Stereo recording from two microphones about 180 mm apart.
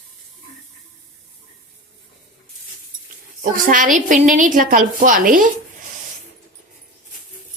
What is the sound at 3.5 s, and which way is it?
A woman's voice, 50° right (ahead or behind).